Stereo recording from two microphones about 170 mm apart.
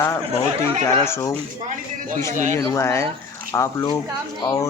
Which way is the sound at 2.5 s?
15° left (ahead or behind).